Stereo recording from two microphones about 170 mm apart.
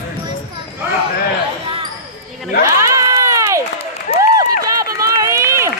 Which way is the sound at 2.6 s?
20° right (ahead or behind).